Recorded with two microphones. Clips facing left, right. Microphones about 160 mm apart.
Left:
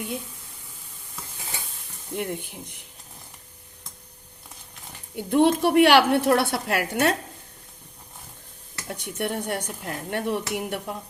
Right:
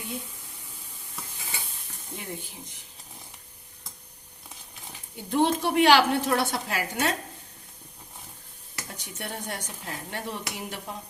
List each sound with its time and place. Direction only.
2.1 s a woman's voice: 60° left (ahead or behind)
5.1 s a woman's voice: 60° left (ahead or behind)
8.9 s a woman's voice: 60° left (ahead or behind)